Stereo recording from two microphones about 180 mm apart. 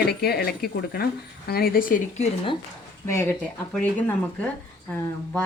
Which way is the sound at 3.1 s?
15° left (ahead or behind).